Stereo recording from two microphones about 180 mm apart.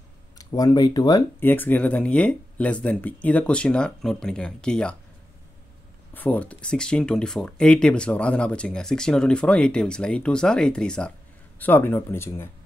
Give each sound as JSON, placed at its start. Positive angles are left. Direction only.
{"t": 0.4, "sound": "speech", "side_deg": 20}
{"t": 6.1, "sound": "speech", "side_deg": 10}